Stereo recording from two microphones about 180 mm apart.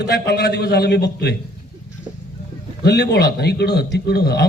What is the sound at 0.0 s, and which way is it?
A man's voice, 65° left (ahead or behind).